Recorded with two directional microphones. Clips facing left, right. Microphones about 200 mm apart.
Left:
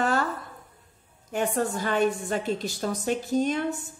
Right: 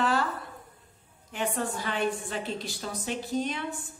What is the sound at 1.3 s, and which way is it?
A woman's voice, 45° left (ahead or behind).